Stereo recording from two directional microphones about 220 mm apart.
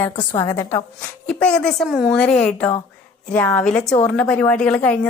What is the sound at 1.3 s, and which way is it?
A woman's voice, 5° left (ahead or behind).